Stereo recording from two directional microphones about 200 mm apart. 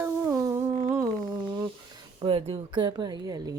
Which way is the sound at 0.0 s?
15° right (ahead or behind).